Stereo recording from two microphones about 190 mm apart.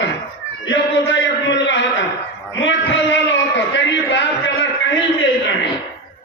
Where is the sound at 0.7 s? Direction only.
70° left (ahead or behind).